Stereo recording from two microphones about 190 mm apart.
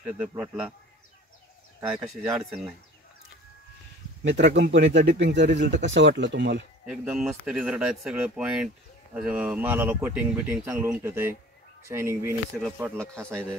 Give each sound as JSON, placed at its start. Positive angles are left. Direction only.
{"t": 0.3, "sound": "speech", "side_deg": -10}
{"t": 1.8, "sound": "speech", "side_deg": -15}
{"t": 2.3, "sound": "speech", "side_deg": 0}
{"t": 4.2, "sound": "speech", "side_deg": -70}
{"t": 5.7, "sound": "speech", "side_deg": -40}
{"t": 5.9, "sound": "speech", "side_deg": -70}
{"t": 6.9, "sound": "speech", "side_deg": -5}